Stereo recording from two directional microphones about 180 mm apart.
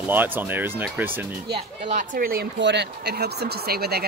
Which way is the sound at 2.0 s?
55° right (ahead or behind).